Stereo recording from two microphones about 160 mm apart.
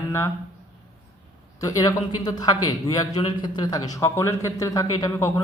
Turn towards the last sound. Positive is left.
turn(degrees=20)  # may be behind; listen again after turning